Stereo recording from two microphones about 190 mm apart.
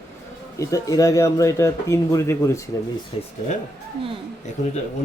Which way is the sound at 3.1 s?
30° left (ahead or behind).